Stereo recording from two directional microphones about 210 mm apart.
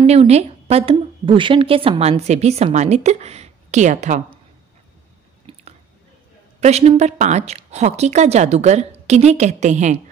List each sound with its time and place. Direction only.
0.0 s a woman's voice: 30° right (ahead or behind)
5.5 s chewing: 25° right (ahead or behind)
6.6 s a woman's voice: 30° right (ahead or behind)